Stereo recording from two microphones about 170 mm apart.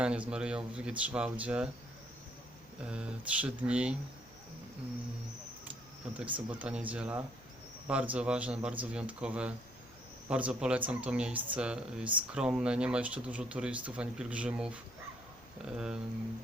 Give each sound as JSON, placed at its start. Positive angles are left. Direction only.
{"t": 0.0, "sound": "speech", "side_deg": -5}
{"t": 2.8, "sound": "speech", "side_deg": -5}
{"t": 6.1, "sound": "speech", "side_deg": -10}